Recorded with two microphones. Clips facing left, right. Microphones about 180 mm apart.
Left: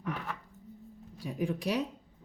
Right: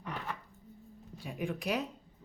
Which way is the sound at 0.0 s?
Centre (ahead or behind).